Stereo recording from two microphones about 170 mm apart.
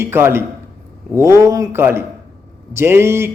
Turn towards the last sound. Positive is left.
turn(degrees=-15)  # may be behind; listen again after turning